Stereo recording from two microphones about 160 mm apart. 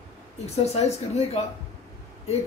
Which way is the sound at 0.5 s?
40° left (ahead or behind).